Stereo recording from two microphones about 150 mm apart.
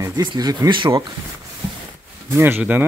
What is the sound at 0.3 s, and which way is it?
Speech, 25° right (ahead or behind).